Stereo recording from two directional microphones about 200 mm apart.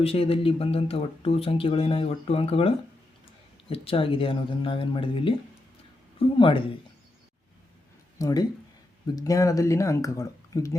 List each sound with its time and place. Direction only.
0.0 s speech: 30° left (ahead or behind)
8.2 s speech: 20° left (ahead or behind)